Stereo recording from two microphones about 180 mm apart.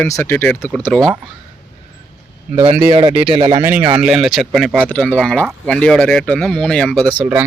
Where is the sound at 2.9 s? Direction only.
25° right (ahead or behind).